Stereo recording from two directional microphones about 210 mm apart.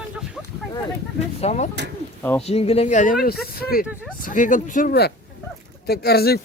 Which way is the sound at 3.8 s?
5° right (ahead or behind).